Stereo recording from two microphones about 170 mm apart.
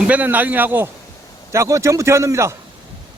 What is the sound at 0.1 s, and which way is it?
Speech, 10° right (ahead or behind).